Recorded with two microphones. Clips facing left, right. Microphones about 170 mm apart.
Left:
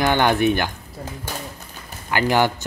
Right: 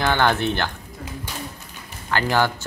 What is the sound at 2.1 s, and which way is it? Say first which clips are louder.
Speech: left 2 dB; 15° left (ahead or behind).